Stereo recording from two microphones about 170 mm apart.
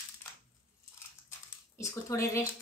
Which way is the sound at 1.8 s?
15° left (ahead or behind).